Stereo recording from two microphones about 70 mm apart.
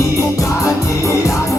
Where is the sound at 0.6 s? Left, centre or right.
Left.